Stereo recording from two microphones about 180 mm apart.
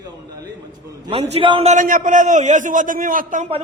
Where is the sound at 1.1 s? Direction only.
35° right (ahead or behind).